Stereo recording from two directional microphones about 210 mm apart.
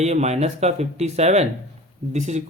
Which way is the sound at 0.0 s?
30° right (ahead or behind).